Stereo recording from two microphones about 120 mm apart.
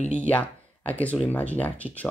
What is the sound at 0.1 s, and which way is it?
Speech, 10° left (ahead or behind).